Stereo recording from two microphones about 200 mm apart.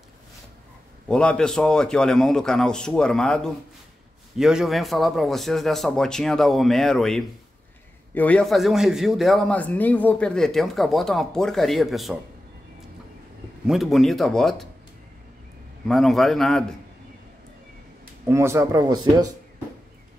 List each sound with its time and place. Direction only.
1.0 s a man's voice: 5° left (ahead or behind)
13.7 s a man's voice: centre (ahead or behind)
15.9 s a man's voice: centre (ahead or behind)
18.3 s speech: 15° right (ahead or behind)